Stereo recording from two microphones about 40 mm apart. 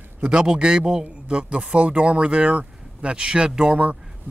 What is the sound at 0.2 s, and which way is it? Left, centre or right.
Speech, centre.